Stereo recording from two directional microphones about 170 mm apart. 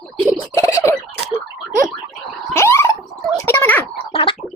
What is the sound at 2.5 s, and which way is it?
Gargling, 15° left (ahead or behind).